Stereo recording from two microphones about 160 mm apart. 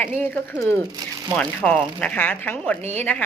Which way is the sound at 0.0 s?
10° left (ahead or behind).